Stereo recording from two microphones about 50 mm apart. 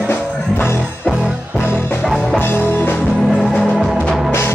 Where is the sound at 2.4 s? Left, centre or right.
Left.